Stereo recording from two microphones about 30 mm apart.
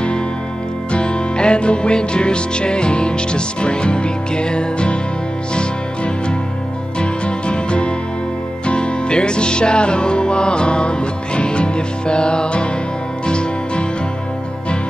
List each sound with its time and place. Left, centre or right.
0.9 s music: left